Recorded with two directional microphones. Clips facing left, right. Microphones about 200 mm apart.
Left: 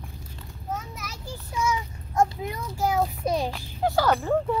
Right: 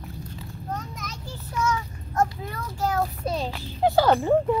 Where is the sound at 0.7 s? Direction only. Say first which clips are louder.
Left 1 dB; 5° left (ahead or behind).